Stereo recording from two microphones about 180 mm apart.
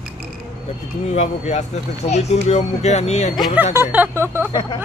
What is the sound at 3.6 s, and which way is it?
Speech, 10° right (ahead or behind).